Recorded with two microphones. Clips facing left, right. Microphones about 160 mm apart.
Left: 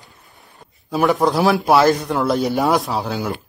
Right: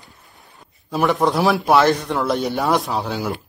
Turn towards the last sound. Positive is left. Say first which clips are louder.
# left 1 dB
turn(degrees=0)  # may be behind; listen again after turning